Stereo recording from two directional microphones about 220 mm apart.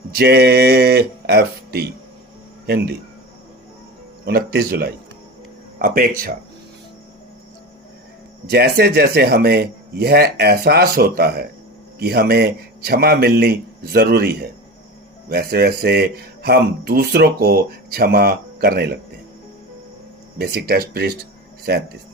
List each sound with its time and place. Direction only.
0.2 s speech: 45° right (ahead or behind)
4.3 s speech: 45° right (ahead or behind)
8.4 s speech: 45° right (ahead or behind)
20.4 s speech: 45° right (ahead or behind)